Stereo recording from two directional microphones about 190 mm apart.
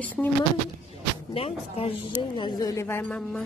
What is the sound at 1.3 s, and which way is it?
A woman's voice, 30° left (ahead or behind).